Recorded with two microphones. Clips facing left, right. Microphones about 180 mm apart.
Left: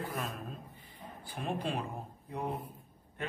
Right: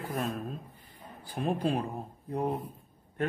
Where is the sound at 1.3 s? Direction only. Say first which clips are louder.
Right 6 dB; 40° right (ahead or behind).